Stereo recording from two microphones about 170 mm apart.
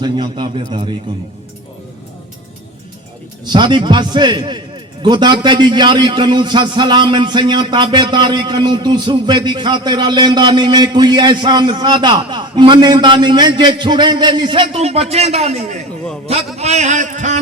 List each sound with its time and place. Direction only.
0.0 s a man's voice: 25° right (ahead or behind)
3.4 s a man's voice: 25° right (ahead or behind); by 17.4 s 45° right (ahead or behind)